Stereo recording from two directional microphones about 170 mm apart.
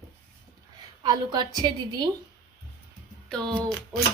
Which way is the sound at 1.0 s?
25° right (ahead or behind).